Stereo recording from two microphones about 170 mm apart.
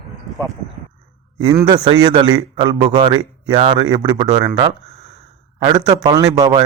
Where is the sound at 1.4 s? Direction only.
25° right (ahead or behind).